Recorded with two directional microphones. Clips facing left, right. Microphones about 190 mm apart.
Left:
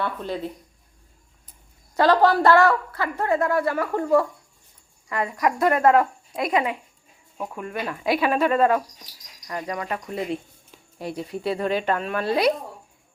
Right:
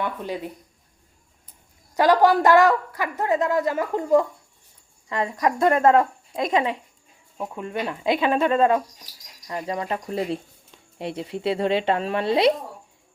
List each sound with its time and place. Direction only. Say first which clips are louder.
0.0 s a woman's voice: even; 15° right (ahead or behind)
2.0 s a woman's voice: right 1 dB; 15° right (ahead or behind)